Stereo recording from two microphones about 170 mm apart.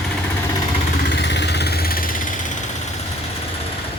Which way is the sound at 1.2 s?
90° left.